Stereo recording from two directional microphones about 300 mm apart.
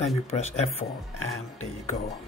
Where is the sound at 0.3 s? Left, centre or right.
Left.